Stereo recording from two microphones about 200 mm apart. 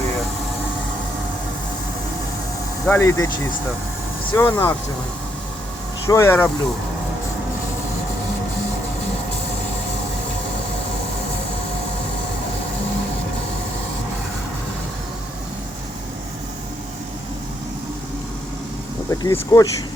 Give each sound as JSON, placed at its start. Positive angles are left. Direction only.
{"t": 2.8, "sound": "speech", "side_deg": 10}
{"t": 4.4, "sound": "speech", "side_deg": 10}
{"t": 6.1, "sound": "speech", "side_deg": 15}
{"t": 19.2, "sound": "speech", "side_deg": 15}